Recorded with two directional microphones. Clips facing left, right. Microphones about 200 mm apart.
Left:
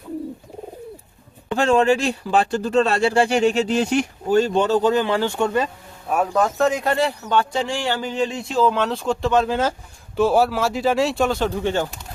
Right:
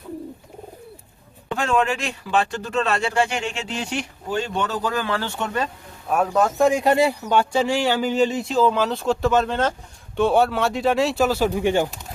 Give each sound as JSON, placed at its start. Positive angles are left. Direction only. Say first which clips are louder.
{"t": 1.5, "sound": "speech", "louder": "left 5 dB", "side_deg": 30}
{"t": 6.1, "sound": "speech", "louder": "even", "side_deg": 0}
{"t": 6.6, "sound": "speech", "louder": "right 5 dB", "side_deg": -10}